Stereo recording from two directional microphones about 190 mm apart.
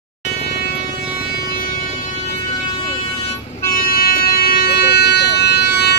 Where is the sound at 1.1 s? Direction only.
55° left (ahead or behind).